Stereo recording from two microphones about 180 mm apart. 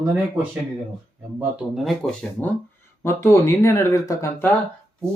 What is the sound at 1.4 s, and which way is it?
Speech, centre (ahead or behind).